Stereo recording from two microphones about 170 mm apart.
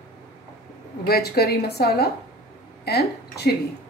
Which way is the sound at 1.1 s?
65° left (ahead or behind).